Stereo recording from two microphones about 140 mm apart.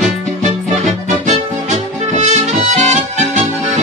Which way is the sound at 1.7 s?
60° right (ahead or behind).